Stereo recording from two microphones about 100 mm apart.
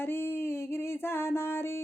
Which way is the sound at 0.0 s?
20° left (ahead or behind).